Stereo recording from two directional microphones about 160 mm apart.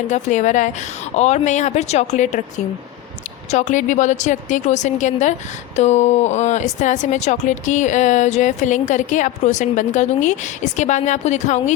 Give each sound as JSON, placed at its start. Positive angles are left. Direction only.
{"t": 0.1, "sound": "speech", "side_deg": 50}
{"t": 3.5, "sound": "speech", "side_deg": 50}